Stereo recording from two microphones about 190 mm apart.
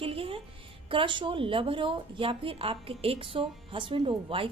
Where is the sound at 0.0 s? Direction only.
30° right (ahead or behind).